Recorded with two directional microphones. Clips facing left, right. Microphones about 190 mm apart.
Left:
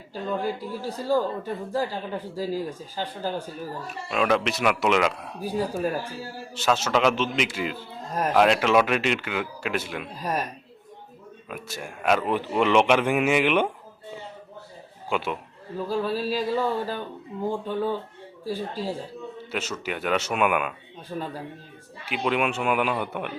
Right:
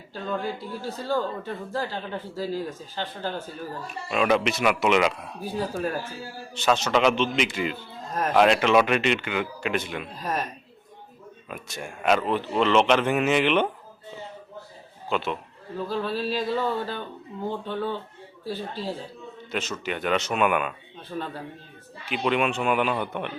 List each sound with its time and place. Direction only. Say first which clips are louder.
0.1 s a man's voice: left 2 dB; 10° left (ahead or behind)
11.4 s speech: even; centre (ahead or behind)
15.1 s speech: even; 10° left (ahead or behind)
19.5 s a man's voice: right 2 dB; 10° left (ahead or behind)